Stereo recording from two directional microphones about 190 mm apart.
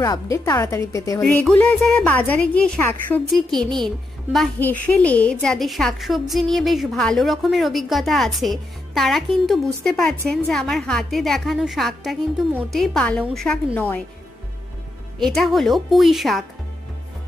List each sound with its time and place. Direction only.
0.0 s a woman's voice: 20° left (ahead or behind)
1.2 s a woman's voice: 5° left (ahead or behind)
15.1 s a woman's voice: centre (ahead or behind)